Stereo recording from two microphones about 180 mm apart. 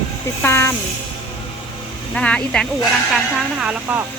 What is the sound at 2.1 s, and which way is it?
Speech, 5° left (ahead or behind).